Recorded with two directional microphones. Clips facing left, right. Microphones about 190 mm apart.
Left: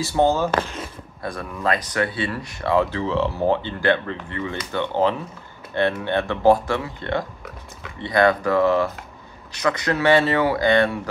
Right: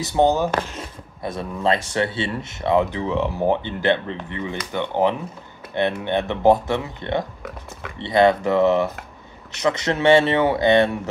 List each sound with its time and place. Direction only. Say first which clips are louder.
0.0 s speech: right 1 dB; 20° right (ahead or behind)